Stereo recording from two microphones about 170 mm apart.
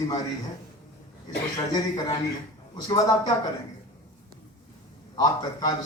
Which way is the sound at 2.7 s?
25° left (ahead or behind).